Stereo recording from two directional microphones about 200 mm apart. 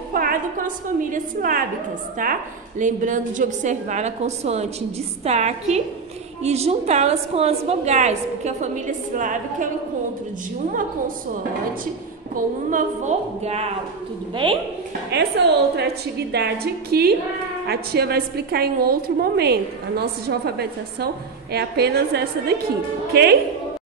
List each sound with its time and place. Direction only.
0.1 s a sound: 45° right (ahead or behind)
1.1 s a woman's voice: 45° right (ahead or behind)
12.4 s a woman's voice: 40° right (ahead or behind)
15.0 s a woman's voice: 55° right (ahead or behind)